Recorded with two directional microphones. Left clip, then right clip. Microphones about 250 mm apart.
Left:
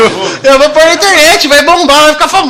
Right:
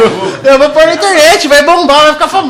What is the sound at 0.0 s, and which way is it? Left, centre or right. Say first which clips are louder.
A man's voice: left 1 dB; centre.